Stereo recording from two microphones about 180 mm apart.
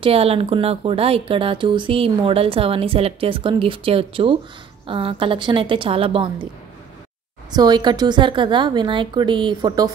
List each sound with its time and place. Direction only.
0.0 s a woman's voice: 35° right (ahead or behind)
7.5 s a woman's voice: 20° right (ahead or behind)